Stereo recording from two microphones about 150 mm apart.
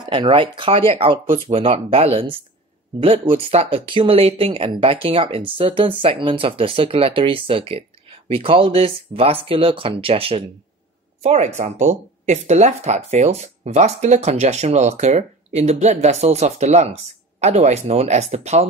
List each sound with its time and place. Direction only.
0.0 s speech: 35° right (ahead or behind)